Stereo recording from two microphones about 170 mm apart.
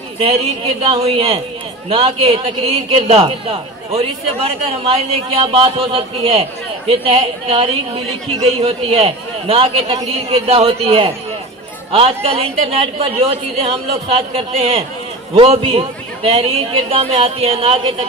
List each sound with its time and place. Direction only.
0.8 s a man's voice: 35° right (ahead or behind)